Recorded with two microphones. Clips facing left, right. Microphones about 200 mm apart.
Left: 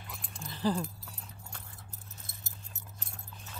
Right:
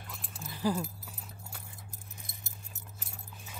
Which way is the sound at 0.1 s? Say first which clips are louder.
Left 1 dB; centre (ahead or behind).